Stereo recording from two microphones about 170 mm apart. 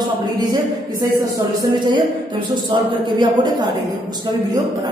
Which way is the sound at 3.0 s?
25° right (ahead or behind).